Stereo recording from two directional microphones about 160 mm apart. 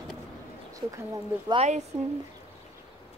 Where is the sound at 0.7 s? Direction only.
20° right (ahead or behind).